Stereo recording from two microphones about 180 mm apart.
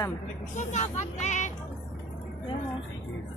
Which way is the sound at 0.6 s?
40° left (ahead or behind).